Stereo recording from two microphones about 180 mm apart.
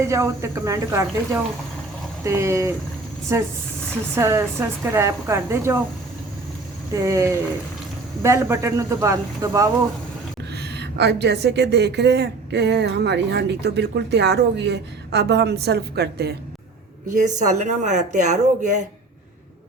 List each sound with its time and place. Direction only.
0.0 s speech: 15° right (ahead or behind)
6.9 s speech: 15° right (ahead or behind)
10.5 s speech: 65° right (ahead or behind)
17.1 s speech: 45° right (ahead or behind)